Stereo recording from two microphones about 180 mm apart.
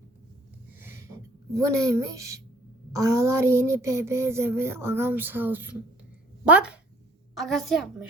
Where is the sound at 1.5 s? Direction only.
15° right (ahead or behind).